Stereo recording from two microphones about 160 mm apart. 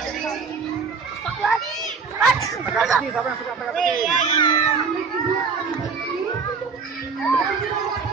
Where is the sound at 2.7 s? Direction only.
Centre (ahead or behind).